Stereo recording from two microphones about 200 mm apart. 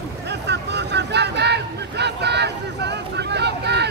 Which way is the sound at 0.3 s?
60° right (ahead or behind).